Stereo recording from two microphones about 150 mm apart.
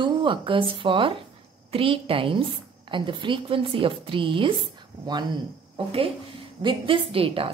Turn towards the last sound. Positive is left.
turn(degrees=-40)  # may be behind; listen again after turning